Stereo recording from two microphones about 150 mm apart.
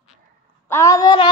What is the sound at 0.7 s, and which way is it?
Speech, 20° left (ahead or behind).